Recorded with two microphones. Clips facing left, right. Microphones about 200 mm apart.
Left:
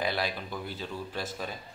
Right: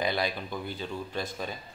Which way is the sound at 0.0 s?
Centre (ahead or behind).